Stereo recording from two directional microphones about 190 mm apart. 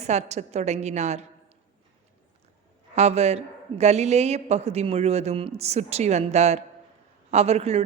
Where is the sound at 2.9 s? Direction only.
35° right (ahead or behind).